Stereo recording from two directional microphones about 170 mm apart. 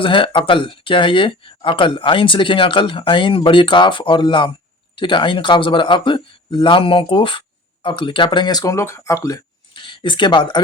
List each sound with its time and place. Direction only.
0.0 s speech: 30° left (ahead or behind)
9.7 s speech: 30° left (ahead or behind)